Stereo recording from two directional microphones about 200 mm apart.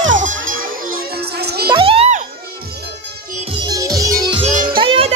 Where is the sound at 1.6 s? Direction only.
25° right (ahead or behind).